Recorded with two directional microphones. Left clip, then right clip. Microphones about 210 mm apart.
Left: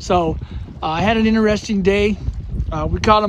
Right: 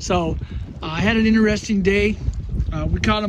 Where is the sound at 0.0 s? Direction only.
5° left (ahead or behind).